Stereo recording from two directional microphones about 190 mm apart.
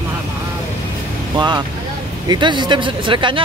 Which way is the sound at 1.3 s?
25° right (ahead or behind).